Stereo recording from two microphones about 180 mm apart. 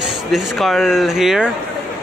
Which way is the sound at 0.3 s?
Centre (ahead or behind).